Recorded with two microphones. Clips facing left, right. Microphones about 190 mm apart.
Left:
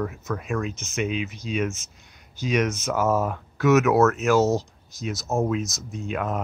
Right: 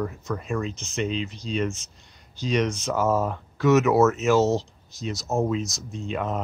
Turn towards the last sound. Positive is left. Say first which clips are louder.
# even
turn(degrees=0)  # may be behind; listen again after turning